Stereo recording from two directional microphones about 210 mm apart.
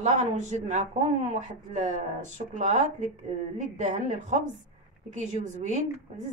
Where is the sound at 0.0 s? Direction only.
35° right (ahead or behind).